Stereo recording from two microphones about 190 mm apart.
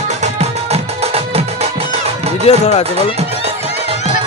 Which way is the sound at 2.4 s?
35° left (ahead or behind).